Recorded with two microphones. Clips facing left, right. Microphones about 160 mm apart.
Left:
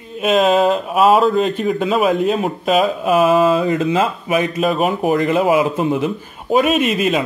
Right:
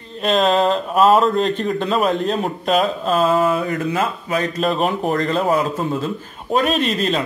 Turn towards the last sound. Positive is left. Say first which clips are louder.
# left 3 dB
turn(degrees=5)  # may be behind; listen again after turning